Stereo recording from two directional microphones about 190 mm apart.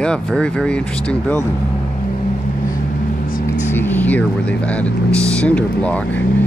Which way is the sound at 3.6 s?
10° left (ahead or behind).